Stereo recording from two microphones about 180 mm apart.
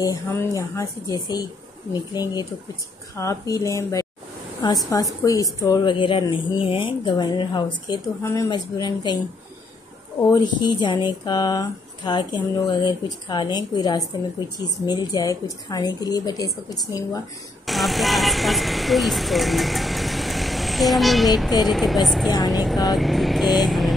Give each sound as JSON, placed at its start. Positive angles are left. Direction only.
{"t": 0.0, "sound": "speech", "side_deg": 15}
{"t": 3.2, "sound": "a woman's voice", "side_deg": 20}
{"t": 10.3, "sound": "speech", "side_deg": 25}
{"t": 17.6, "sound": "vehicle", "side_deg": 0}
{"t": 21.6, "sound": "speech", "side_deg": 0}